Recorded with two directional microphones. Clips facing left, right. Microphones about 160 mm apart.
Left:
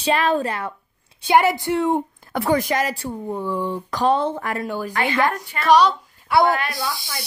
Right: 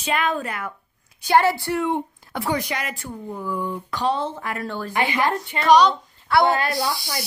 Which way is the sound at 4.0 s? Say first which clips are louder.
Left 5 dB; 55° left (ahead or behind).